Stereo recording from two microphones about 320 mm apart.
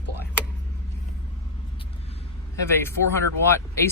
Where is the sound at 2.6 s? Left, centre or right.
Centre.